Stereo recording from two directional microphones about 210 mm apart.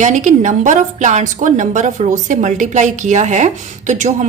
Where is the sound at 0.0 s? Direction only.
35° right (ahead or behind).